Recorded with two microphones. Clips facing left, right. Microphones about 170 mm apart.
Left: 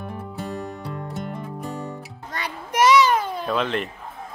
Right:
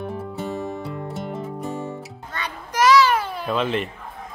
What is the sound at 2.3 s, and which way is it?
Children playing, 30° left (ahead or behind).